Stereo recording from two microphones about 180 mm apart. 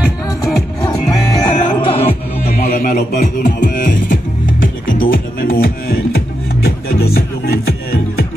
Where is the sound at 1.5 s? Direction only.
35° left (ahead or behind).